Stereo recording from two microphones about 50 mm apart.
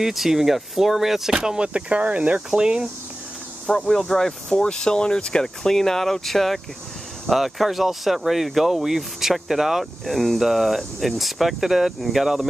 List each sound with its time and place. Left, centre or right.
0.0 s speech: centre
1.7 s speech: right
2.5 s speech: centre
3.7 s speech: centre